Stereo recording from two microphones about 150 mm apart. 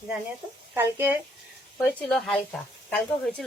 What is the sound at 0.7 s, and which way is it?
Speech, 15° right (ahead or behind).